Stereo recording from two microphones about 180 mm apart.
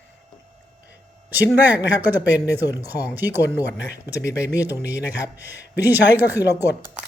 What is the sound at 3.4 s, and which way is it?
Speech, 70° left (ahead or behind).